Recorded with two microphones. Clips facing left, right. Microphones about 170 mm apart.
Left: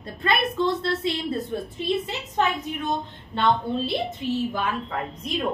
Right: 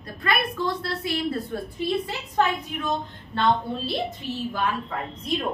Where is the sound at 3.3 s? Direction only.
20° left (ahead or behind).